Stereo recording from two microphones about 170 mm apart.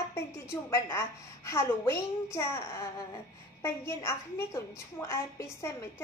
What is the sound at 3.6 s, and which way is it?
A woman's voice, 15° left (ahead or behind).